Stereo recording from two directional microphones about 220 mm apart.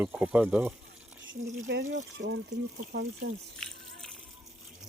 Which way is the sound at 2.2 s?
55° right (ahead or behind).